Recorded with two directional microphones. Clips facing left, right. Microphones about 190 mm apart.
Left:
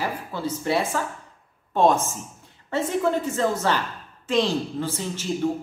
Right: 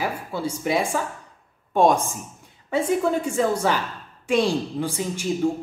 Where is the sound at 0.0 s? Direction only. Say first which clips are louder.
Right 1 dB; 10° right (ahead or behind).